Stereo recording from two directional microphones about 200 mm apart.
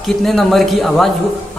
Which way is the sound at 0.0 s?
Centre (ahead or behind).